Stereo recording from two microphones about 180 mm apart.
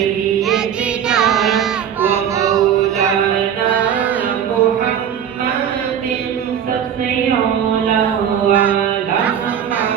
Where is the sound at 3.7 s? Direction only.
10° right (ahead or behind).